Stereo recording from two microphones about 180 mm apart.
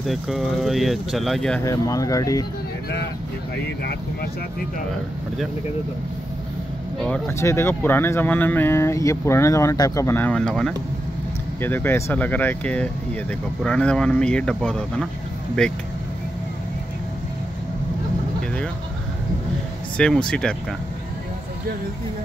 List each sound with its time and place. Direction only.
0.0 s speech: centre (ahead or behind)
1.6 s speech: 20° left (ahead or behind)
7.2 s speech: 15° left (ahead or behind)
20.0 s speech: 5° left (ahead or behind)